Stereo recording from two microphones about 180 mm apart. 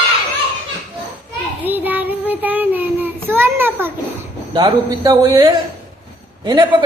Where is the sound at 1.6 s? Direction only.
10° right (ahead or behind).